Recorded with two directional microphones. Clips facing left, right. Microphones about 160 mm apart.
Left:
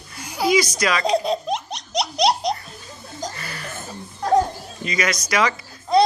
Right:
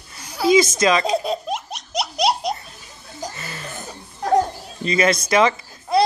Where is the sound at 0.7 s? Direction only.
25° right (ahead or behind).